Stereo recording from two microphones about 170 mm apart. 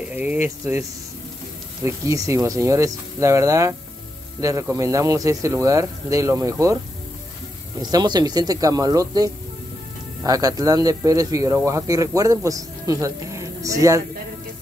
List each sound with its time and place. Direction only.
0.1 s speech: 10° right (ahead or behind)
7.8 s speech: 25° right (ahead or behind)